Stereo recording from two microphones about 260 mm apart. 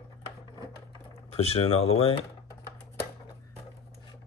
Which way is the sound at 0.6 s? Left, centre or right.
Left.